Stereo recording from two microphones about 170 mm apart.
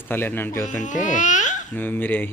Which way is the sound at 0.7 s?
45° left (ahead or behind).